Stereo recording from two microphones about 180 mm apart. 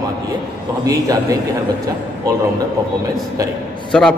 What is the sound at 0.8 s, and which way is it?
Speech, 20° right (ahead or behind).